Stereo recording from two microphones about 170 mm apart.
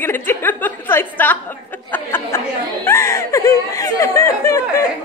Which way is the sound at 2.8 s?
15° left (ahead or behind).